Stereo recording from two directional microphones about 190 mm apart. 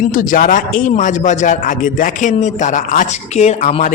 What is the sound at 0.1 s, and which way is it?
A man's voice, 45° left (ahead or behind).